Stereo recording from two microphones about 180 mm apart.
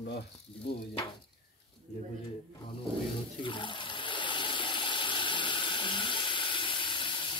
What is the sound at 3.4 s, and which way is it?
Water, 25° left (ahead or behind).